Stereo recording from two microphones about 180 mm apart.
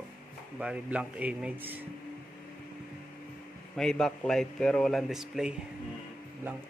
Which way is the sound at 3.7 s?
5° left (ahead or behind).